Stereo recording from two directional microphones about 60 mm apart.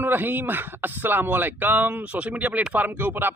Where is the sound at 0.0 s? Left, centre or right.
Right.